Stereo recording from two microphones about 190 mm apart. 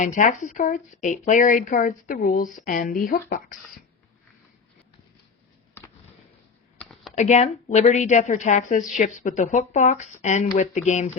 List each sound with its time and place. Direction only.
0.0 s speech: 40° left (ahead or behind)
5.8 s a sound: 10° left (ahead or behind)
6.7 s computer keyboard: centre (ahead or behind)
7.2 s a woman's voice: 40° left (ahead or behind)